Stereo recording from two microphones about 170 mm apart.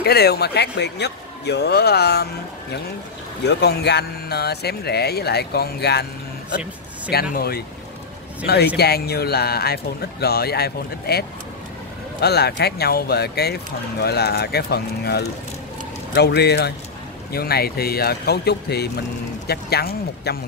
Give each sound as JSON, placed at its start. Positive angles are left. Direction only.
{"t": 0.0, "sound": "speech", "side_deg": 70}
{"t": 3.4, "sound": "speech", "side_deg": 80}
{"t": 7.1, "sound": "speech", "side_deg": 65}